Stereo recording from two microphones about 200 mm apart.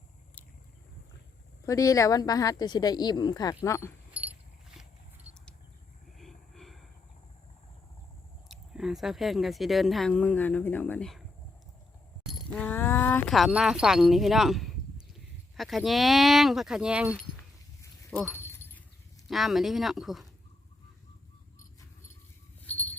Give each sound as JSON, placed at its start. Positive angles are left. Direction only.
{"t": 1.6, "sound": "a woman's voice", "side_deg": 15}
{"t": 4.1, "sound": "a sound", "side_deg": -10}
{"t": 6.1, "sound": "vehicle", "side_deg": 0}
{"t": 8.4, "sound": "speech", "side_deg": 0}
{"t": 12.2, "sound": "a sound", "side_deg": 10}
{"t": 13.3, "sound": "speech", "side_deg": 0}
{"t": 18.4, "sound": "dog", "side_deg": 10}
{"t": 19.3, "sound": "speech", "side_deg": 0}
{"t": 22.6, "sound": "a sound", "side_deg": 5}